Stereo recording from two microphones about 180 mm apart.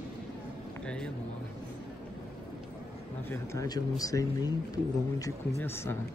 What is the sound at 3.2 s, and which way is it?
Speech, 15° left (ahead or behind).